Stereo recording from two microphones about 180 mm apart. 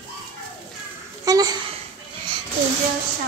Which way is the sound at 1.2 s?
20° right (ahead or behind).